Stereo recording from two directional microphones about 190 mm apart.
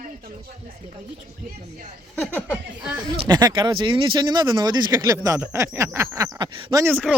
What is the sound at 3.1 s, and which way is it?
Speech, 25° right (ahead or behind).